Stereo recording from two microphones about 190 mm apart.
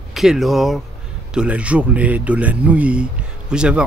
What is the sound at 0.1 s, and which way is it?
Speech, centre (ahead or behind).